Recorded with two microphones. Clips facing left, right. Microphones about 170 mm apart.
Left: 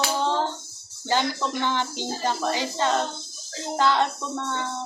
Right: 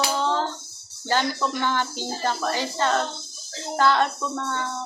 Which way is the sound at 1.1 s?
15° left (ahead or behind).